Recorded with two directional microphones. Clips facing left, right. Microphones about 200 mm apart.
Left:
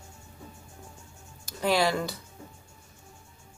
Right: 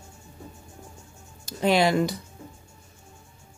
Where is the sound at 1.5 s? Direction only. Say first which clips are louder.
Right 4 dB; 20° right (ahead or behind).